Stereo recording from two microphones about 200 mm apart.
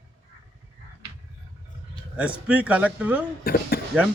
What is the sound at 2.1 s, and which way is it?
A man's voice, 5° right (ahead or behind).